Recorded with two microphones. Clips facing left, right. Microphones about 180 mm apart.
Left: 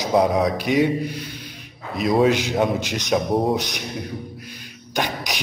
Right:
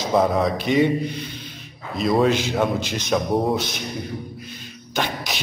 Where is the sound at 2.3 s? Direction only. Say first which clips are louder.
Left 1 dB; 15° left (ahead or behind).